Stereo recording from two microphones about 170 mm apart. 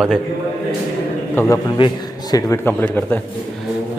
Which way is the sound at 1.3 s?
15° left (ahead or behind).